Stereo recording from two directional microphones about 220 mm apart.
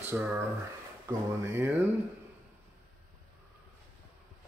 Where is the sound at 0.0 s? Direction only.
10° right (ahead or behind).